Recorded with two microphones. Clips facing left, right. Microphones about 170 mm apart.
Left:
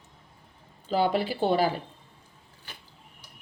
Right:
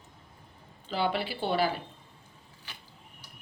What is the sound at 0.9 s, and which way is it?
Speech, 40° left (ahead or behind).